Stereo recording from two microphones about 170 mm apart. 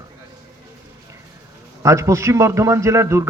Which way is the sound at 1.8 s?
15° right (ahead or behind).